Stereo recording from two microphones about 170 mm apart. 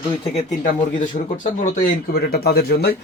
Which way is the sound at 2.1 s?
65° left (ahead or behind).